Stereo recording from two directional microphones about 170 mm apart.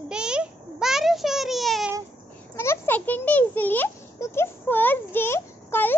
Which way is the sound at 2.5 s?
15° left (ahead or behind).